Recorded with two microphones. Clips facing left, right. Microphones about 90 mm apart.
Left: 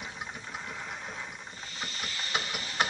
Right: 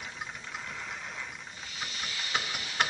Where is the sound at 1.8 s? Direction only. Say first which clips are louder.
Left 1 dB; centre (ahead or behind).